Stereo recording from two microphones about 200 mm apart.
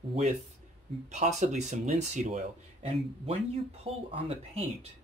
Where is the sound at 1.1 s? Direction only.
35° right (ahead or behind).